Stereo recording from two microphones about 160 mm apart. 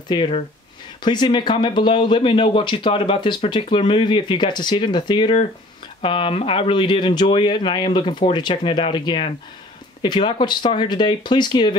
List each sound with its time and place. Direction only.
0.1 s speech: 30° left (ahead or behind)